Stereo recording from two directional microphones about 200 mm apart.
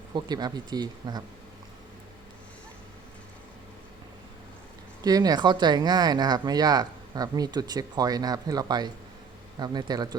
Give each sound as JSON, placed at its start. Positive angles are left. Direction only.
{"t": 0.1, "sound": "speech", "side_deg": -20}
{"t": 5.0, "sound": "speech", "side_deg": -20}